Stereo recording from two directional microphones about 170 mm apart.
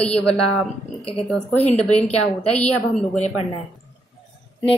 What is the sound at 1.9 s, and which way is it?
Speech, 40° left (ahead or behind).